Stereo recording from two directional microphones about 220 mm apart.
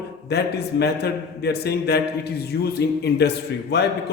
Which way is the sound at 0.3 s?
50° left (ahead or behind).